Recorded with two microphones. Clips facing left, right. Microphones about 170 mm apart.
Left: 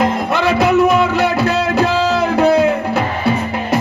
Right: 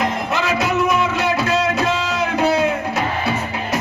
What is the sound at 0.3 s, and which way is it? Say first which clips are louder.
Music: left 7 dB; 60° left (ahead or behind).